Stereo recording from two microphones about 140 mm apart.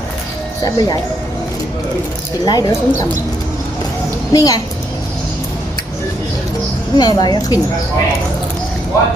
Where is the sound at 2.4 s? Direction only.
30° left (ahead or behind).